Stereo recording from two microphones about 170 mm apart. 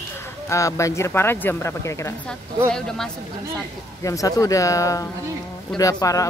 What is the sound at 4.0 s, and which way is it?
Speech, 20° left (ahead or behind).